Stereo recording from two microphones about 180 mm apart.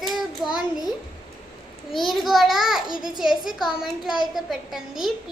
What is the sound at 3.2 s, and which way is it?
Speech, centre (ahead or behind).